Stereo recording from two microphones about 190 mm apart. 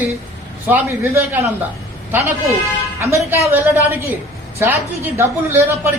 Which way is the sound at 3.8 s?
10° right (ahead or behind).